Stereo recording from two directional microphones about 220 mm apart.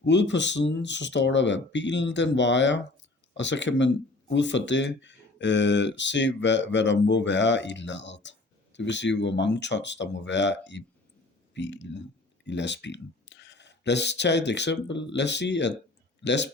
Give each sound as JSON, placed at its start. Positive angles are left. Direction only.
{"t": 0.0, "sound": "speech", "side_deg": 55}